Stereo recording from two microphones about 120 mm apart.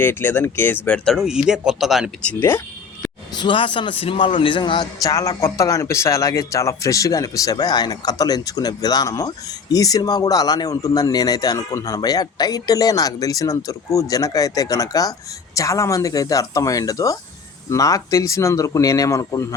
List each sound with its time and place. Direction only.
0.0 s speech: 20° left (ahead or behind)
0.9 s speech: 5° left (ahead or behind)
2.2 s speech: 20° left (ahead or behind)
3.3 s a man's voice: 45° left (ahead or behind)
5.0 s speech: 30° left (ahead or behind)